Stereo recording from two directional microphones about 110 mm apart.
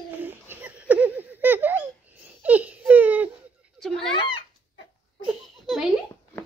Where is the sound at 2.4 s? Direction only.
15° right (ahead or behind).